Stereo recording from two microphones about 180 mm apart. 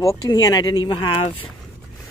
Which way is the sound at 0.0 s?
20° left (ahead or behind).